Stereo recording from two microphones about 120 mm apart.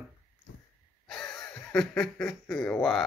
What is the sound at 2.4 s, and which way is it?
Speech, 10° left (ahead or behind).